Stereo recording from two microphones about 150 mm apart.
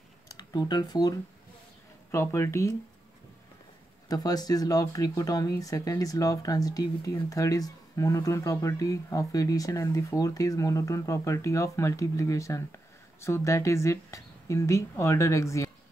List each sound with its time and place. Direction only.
0.4 s speech: 25° left (ahead or behind)
4.1 s speech: 25° left (ahead or behind)